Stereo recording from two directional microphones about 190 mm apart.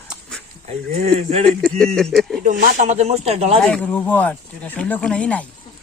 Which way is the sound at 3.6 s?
5° left (ahead or behind).